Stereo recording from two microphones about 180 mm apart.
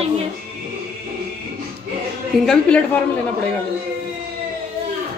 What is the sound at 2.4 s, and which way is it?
Speech, 5° left (ahead or behind).